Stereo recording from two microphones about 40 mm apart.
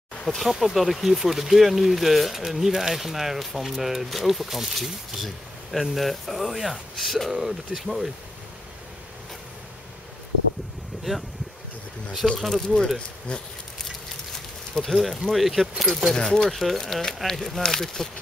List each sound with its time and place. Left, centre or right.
0.1 s a sound: centre
0.5 s speech: centre
7.3 s speech: centre
12.2 s speech: centre
12.5 s speech: centre
14.8 s speech: centre
16.1 s speech: centre
16.4 s speech: centre
17.1 s speech: centre